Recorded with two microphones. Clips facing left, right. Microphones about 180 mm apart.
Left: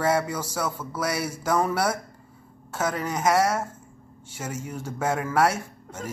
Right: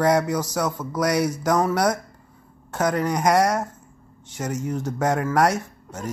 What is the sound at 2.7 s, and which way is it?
Speech, 5° left (ahead or behind).